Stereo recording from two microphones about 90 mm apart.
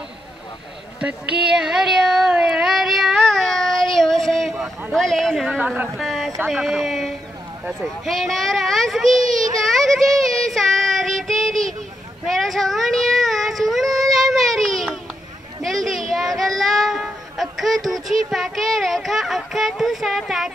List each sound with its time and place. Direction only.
1.6 s a sound: 5° right (ahead or behind)
4.9 s a child's voice: 5° left (ahead or behind)
5.6 s speech: 15° right (ahead or behind)
5.9 s a child's voice: centre (ahead or behind)
9.6 s child singing: centre (ahead or behind)
12.3 s a sound: centre (ahead or behind)
16.3 s child singing: centre (ahead or behind)
17.0 s speech: centre (ahead or behind)